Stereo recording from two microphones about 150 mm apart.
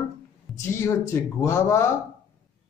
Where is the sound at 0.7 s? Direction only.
20° left (ahead or behind).